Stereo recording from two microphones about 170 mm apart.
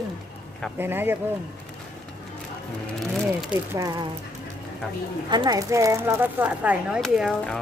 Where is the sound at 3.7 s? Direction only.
20° right (ahead or behind).